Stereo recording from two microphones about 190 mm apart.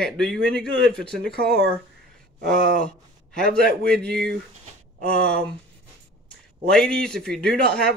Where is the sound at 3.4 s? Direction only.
55° right (ahead or behind).